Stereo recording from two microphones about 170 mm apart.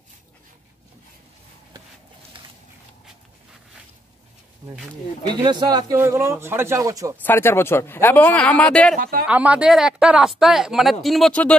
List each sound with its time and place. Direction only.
2.3 s a sound: 30° right (ahead or behind)
5.3 s speech: 25° right (ahead or behind)
7.2 s speech: 15° left (ahead or behind)
8.9 s speech: 55° right (ahead or behind)
9.2 s speech: 10° right (ahead or behind)